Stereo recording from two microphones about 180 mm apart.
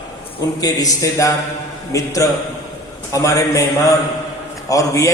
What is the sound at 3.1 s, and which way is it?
Speech, 20° left (ahead or behind).